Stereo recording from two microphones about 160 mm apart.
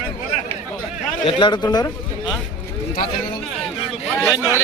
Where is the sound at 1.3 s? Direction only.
30° left (ahead or behind).